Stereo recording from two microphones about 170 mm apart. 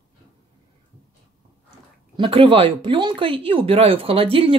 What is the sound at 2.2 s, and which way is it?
Speech, 30° right (ahead or behind).